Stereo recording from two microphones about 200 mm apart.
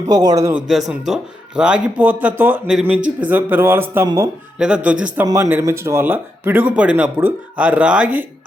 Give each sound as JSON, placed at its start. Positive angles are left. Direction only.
{"t": 0.1, "sound": "speech", "side_deg": -20}
{"t": 0.7, "sound": "speech", "side_deg": 0}
{"t": 4.5, "sound": "speech", "side_deg": -5}